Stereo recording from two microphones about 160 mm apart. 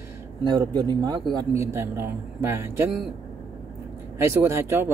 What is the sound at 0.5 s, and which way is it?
Speech, 25° right (ahead or behind).